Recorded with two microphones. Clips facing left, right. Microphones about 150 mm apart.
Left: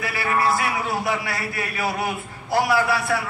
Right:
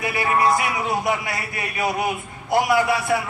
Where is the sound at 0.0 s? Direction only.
20° right (ahead or behind).